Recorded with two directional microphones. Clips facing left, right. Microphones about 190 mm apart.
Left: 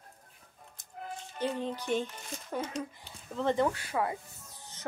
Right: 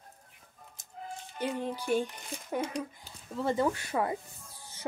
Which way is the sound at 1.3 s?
10° right (ahead or behind).